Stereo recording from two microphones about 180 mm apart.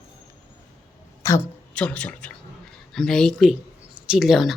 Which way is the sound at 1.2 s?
15° left (ahead or behind).